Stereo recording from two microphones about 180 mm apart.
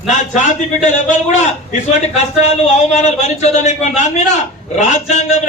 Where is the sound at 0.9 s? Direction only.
40° left (ahead or behind).